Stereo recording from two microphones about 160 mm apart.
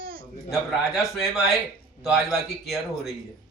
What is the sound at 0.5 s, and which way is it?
A man's voice, centre (ahead or behind).